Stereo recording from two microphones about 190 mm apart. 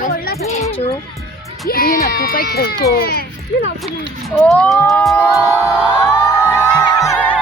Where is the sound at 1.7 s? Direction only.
55° left (ahead or behind).